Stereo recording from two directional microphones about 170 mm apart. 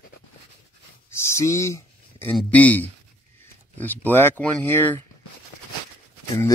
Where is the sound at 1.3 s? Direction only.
15° left (ahead or behind).